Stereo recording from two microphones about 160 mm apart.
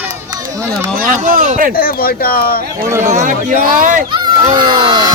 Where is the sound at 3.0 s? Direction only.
50° right (ahead or behind).